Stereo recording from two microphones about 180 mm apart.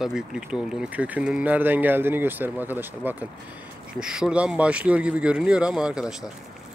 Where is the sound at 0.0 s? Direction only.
5° right (ahead or behind).